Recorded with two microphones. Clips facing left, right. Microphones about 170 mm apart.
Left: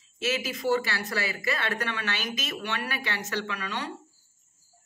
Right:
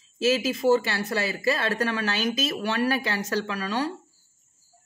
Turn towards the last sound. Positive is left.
turn(degrees=-35)  # may be behind; listen again after turning